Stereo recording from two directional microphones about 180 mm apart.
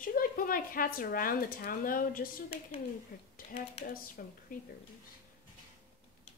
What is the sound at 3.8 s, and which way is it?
Speech, 50° left (ahead or behind).